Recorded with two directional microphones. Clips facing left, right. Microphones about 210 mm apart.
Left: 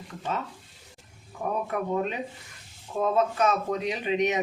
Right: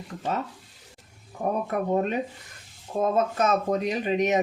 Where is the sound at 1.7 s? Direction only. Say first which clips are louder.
Right 5 dB; 45° right (ahead or behind).